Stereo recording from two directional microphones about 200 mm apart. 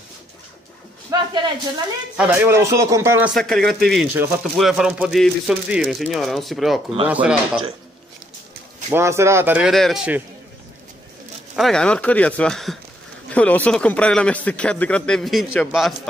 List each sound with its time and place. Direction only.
1.1 s a sound: 20° right (ahead or behind)
2.1 s speech: 10° right (ahead or behind)
3.3 s speech: centre (ahead or behind)
4.1 s speech: 10° right (ahead or behind)
8.9 s speech: 15° right (ahead or behind)
11.5 s speech: centre (ahead or behind)